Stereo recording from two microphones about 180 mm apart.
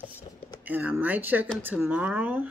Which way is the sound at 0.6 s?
10° right (ahead or behind).